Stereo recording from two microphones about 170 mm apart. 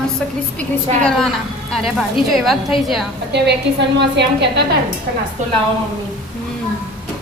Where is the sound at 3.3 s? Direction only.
85° right.